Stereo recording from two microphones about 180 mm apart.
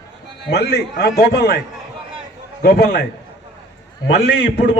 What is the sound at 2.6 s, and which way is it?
Speech, 60° left (ahead or behind).